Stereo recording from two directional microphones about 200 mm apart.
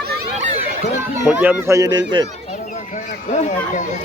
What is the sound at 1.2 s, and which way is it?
Speech, 5° right (ahead or behind).